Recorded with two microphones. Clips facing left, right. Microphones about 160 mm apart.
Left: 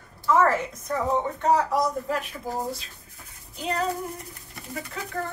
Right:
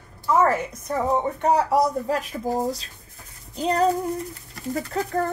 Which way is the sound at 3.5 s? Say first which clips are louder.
Right 6 dB; 35° right (ahead or behind).